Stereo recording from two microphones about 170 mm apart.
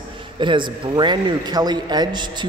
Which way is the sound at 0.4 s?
30° right (ahead or behind).